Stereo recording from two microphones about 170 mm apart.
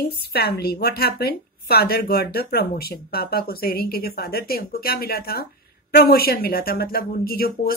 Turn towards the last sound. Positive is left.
turn(degrees=60)  # may be behind; listen again after turning